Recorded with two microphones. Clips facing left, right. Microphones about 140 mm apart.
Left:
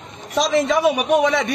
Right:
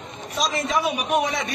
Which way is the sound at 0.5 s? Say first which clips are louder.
Left 8 dB; 75° left (ahead or behind).